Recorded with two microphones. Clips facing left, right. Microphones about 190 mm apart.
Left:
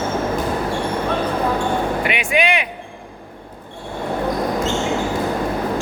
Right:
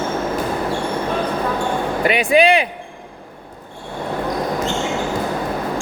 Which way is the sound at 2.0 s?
35° right (ahead or behind).